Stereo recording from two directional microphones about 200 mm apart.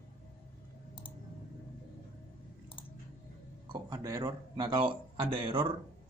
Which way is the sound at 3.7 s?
20° right (ahead or behind).